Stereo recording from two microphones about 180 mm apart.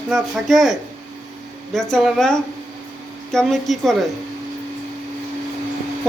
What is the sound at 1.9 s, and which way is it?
Speech, centre (ahead or behind).